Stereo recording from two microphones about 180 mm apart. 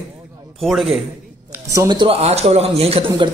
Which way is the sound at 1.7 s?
20° right (ahead or behind).